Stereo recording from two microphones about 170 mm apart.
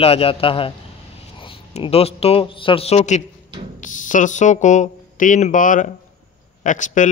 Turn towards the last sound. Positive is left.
turn(degrees=50)  # may be behind; listen again after turning